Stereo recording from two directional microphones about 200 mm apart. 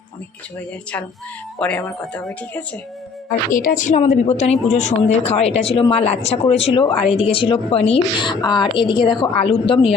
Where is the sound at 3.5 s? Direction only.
40° left (ahead or behind).